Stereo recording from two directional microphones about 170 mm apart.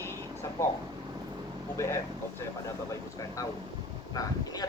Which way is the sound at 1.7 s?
15° left (ahead or behind).